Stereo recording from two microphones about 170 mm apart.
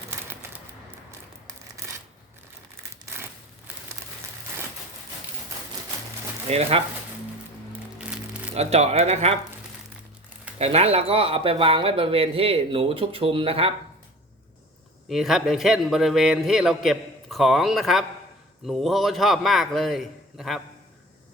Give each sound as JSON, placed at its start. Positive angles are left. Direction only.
{"t": 3.7, "sound": "a sound", "side_deg": -10}
{"t": 6.5, "sound": "speech", "side_deg": -35}
{"t": 7.9, "sound": "music", "side_deg": -5}
{"t": 8.5, "sound": "speech", "side_deg": -40}
{"t": 10.6, "sound": "speech", "side_deg": -35}
{"t": 15.1, "sound": "a man's voice", "side_deg": 0}